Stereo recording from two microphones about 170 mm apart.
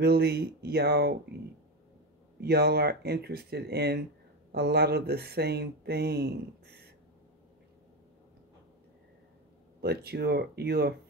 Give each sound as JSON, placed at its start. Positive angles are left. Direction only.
{"t": 0.0, "sound": "speech", "side_deg": -70}
{"t": 2.4, "sound": "speech", "side_deg": -70}
{"t": 9.8, "sound": "speech", "side_deg": -70}